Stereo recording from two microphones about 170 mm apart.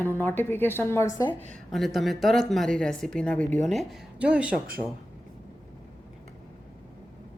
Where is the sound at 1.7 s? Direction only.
Centre (ahead or behind).